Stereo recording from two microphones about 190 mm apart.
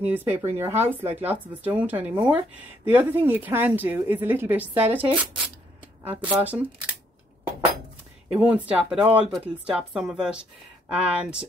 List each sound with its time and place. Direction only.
0.0 s a woman's voice: 10° right (ahead or behind)
8.3 s a woman's voice: 5° right (ahead or behind)